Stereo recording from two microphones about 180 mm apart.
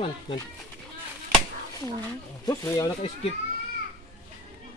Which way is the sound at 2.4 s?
15° left (ahead or behind).